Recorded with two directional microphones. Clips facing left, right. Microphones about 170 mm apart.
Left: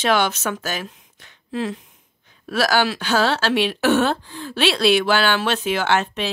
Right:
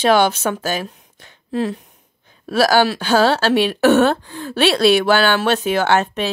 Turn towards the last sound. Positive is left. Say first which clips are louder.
# right 4 dB
turn(degrees=-45)  # may be behind; listen again after turning